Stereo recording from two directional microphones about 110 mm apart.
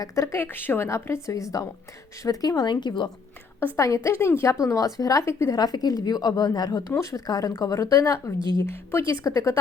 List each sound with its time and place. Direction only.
0.0 s a woman's voice: 25° left (ahead or behind); by 3.1 s 45° left (ahead or behind)
3.8 s a woman's voice: 30° left (ahead or behind)
5.5 s a woman's voice: 35° left (ahead or behind)